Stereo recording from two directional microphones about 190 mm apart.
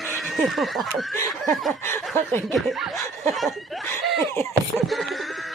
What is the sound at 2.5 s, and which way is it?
Speech, centre (ahead or behind).